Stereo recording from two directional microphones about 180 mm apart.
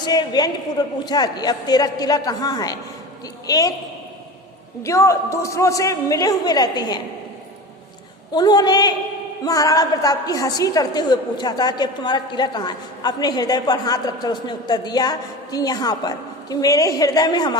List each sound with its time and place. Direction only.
0.0 s a woman's voice: 25° left (ahead or behind)
4.8 s a woman's voice: 15° left (ahead or behind)
8.3 s a woman's voice: 20° left (ahead or behind)